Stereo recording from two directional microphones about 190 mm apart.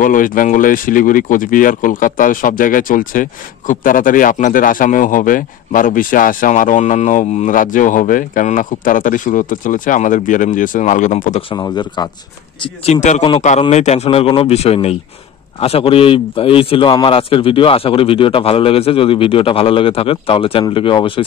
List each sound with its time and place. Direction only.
0.0 s speech: 45° left (ahead or behind)
11.5 s a man's voice: 20° left (ahead or behind)
12.8 s a man's voice: 35° left (ahead or behind)